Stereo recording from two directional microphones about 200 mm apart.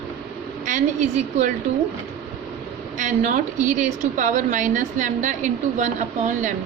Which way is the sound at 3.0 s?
40° right (ahead or behind).